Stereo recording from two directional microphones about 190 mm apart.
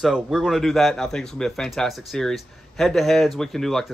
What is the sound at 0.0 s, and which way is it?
Speech, centre (ahead or behind).